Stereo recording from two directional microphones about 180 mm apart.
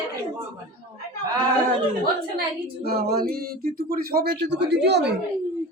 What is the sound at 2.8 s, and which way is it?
Speech, 60° right (ahead or behind).